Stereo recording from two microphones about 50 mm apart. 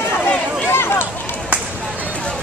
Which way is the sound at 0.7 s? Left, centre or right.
Left.